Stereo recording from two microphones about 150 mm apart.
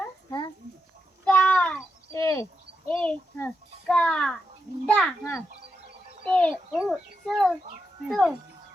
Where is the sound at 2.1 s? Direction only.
20° left (ahead or behind).